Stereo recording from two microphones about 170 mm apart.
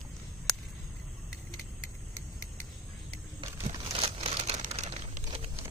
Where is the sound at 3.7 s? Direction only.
30° right (ahead or behind).